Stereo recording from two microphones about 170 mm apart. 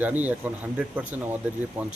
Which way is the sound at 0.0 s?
10° right (ahead or behind).